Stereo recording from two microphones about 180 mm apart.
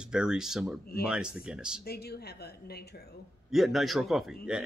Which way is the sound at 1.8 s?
60° left (ahead or behind).